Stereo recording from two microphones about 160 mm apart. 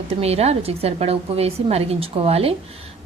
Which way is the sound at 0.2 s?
40° right (ahead or behind).